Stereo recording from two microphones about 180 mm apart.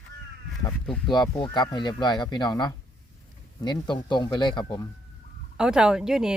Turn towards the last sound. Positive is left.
turn(degrees=-5)  # may be behind; listen again after turning